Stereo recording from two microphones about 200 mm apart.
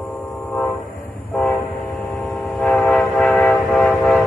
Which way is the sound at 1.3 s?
5° left (ahead or behind).